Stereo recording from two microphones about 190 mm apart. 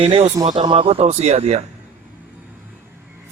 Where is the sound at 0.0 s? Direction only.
30° right (ahead or behind).